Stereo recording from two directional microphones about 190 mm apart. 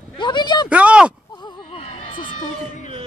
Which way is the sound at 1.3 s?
25° left (ahead or behind).